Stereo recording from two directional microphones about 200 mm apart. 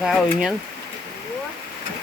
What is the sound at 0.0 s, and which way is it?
Speech, centre (ahead or behind).